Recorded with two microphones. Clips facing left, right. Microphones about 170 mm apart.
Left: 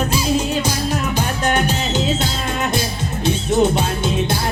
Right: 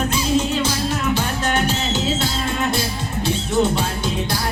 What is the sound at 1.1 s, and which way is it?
Music, 15° left (ahead or behind).